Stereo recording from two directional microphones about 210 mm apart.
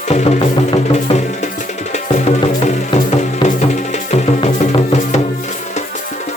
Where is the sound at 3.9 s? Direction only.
35° left (ahead or behind).